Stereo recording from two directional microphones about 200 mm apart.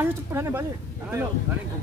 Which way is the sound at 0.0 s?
10° right (ahead or behind).